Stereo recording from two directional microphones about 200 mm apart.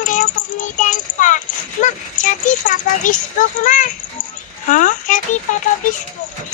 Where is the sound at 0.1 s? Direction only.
40° left (ahead or behind).